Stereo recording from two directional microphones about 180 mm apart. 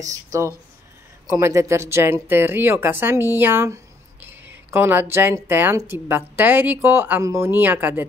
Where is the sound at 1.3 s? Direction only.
15° right (ahead or behind).